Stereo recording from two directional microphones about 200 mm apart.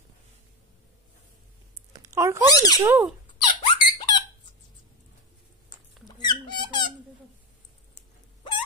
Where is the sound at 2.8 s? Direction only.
10° right (ahead or behind).